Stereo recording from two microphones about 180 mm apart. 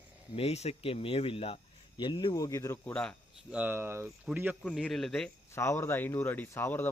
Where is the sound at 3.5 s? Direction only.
10° right (ahead or behind).